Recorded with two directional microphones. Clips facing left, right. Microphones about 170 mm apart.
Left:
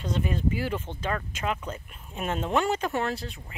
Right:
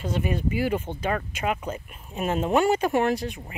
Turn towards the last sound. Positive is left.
turn(degrees=-15)  # may be behind; listen again after turning